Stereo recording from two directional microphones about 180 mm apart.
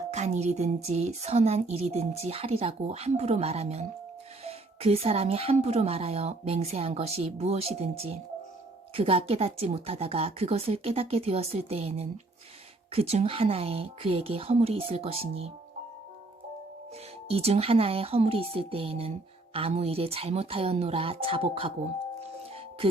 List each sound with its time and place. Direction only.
0.1 s speech: 40° right (ahead or behind)
17.2 s speech: 35° right (ahead or behind)